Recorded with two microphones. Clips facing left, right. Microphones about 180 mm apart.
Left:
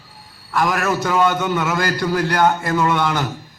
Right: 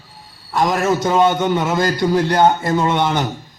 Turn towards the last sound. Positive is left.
turn(degrees=-20)  # may be behind; listen again after turning